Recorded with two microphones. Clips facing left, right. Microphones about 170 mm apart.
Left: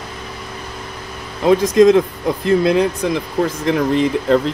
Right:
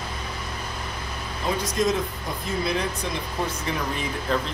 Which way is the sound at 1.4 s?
85° left.